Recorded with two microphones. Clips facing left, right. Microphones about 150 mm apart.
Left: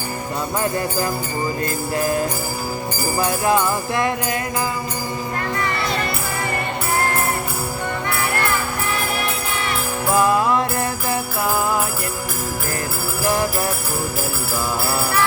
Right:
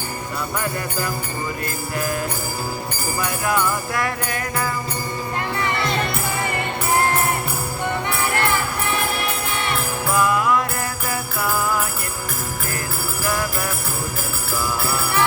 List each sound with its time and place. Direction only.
3.2 s music: 25° left (ahead or behind)
10.2 s music: 30° left (ahead or behind)
13.2 s jingle bell: 25° left (ahead or behind)